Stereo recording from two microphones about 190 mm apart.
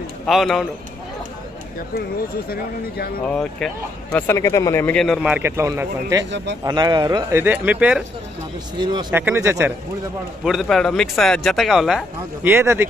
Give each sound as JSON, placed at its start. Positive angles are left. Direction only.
{"t": 0.3, "sound": "a man's voice", "side_deg": 0}
{"t": 3.3, "sound": "a man's voice", "side_deg": 5}
{"t": 4.4, "sound": "a man's voice", "side_deg": 15}
{"t": 8.7, "sound": "speech", "side_deg": -25}
{"t": 9.1, "sound": "speech", "side_deg": -10}
{"t": 10.4, "sound": "a man's voice", "side_deg": 0}
{"t": 12.4, "sound": "speech", "side_deg": -10}